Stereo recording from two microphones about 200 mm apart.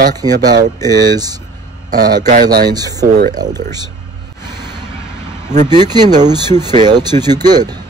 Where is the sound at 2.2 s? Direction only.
45° right (ahead or behind).